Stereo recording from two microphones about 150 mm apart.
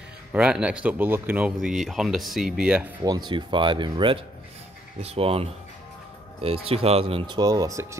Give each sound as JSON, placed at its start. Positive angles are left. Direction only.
{"t": 0.3, "sound": "speech", "side_deg": -5}
{"t": 3.0, "sound": "speech", "side_deg": -25}